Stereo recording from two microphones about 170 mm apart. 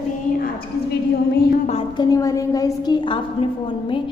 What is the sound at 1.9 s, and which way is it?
A woman's voice, 20° left (ahead or behind).